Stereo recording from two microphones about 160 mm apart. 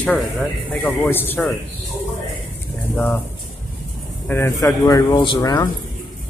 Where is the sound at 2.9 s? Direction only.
10° left (ahead or behind).